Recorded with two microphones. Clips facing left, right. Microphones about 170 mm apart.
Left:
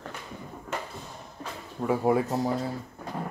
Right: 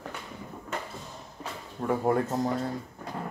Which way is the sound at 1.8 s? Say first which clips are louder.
Left 2 dB; 5° left (ahead or behind).